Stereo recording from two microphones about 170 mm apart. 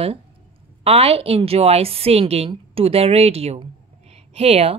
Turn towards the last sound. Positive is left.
turn(degrees=-35)  # may be behind; listen again after turning